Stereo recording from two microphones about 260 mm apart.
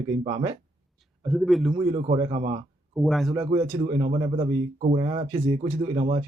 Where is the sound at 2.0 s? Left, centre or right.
Right.